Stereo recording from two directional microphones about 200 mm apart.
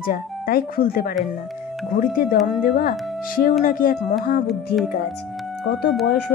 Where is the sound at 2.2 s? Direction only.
45° left (ahead or behind).